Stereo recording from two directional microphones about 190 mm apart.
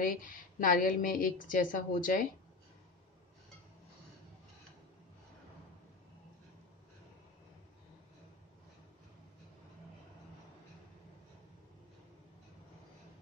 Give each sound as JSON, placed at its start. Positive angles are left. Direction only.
{"t": 0.0, "sound": "a woman's voice", "side_deg": 50}